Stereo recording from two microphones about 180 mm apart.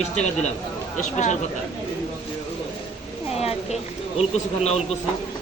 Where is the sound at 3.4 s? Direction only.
35° left (ahead or behind).